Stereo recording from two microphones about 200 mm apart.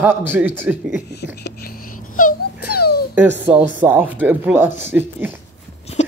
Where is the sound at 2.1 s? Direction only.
45° left (ahead or behind).